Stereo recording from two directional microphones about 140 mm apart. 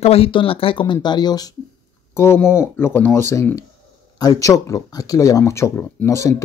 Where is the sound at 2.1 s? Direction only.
15° left (ahead or behind).